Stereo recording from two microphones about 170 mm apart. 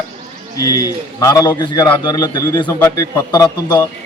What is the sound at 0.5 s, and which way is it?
A man's voice, 20° left (ahead or behind).